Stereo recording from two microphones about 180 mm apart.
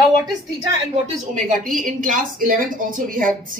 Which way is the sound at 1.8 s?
50° right (ahead or behind).